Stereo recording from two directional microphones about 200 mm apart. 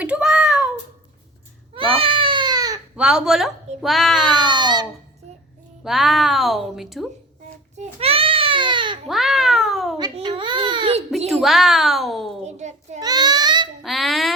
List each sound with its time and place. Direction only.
0.0 s a sound: 5° right (ahead or behind)
1.7 s baby cry: 25° right (ahead or behind)
2.9 s speech: 5° right (ahead or behind)
4.3 s speech: 20° right (ahead or behind)
5.8 s speech: centre (ahead or behind)
7.9 s baby cry: 30° right (ahead or behind)
9.0 s cat: centre (ahead or behind)
10.0 s baby cry: 25° right (ahead or behind)
11.3 s speech: centre (ahead or behind)
12.5 s child singing: 35° right (ahead or behind)
13.0 s a sound: 20° right (ahead or behind)
13.8 s speech: centre (ahead or behind)